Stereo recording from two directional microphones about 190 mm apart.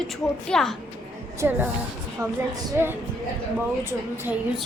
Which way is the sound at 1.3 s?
10° right (ahead or behind).